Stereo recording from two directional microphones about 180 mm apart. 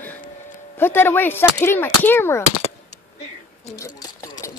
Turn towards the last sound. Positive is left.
turn(degrees=20)  # may be behind; listen again after turning